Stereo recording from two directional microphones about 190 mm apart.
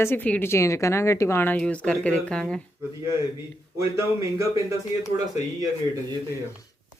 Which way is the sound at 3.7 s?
15° right (ahead or behind).